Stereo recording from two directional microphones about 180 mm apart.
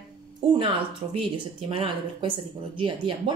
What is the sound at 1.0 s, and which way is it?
Speech, 30° right (ahead or behind).